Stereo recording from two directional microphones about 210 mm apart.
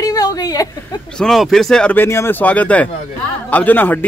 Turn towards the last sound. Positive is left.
turn(degrees=10)  # may be behind; listen again after turning